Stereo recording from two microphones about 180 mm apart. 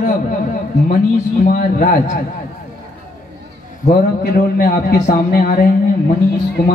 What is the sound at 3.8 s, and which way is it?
A man's voice, 55° left (ahead or behind).